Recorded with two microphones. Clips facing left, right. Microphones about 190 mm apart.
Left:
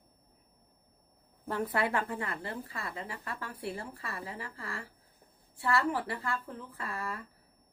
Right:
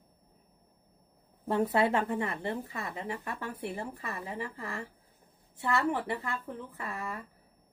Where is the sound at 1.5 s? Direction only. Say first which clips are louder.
Right 5 dB; 25° right (ahead or behind).